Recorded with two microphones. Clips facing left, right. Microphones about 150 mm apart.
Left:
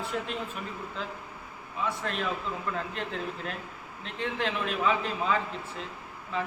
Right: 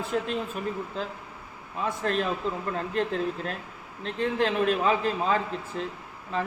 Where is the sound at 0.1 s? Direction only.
40° right (ahead or behind).